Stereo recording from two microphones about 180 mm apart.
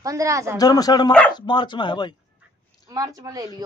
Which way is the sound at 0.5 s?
20° left (ahead or behind).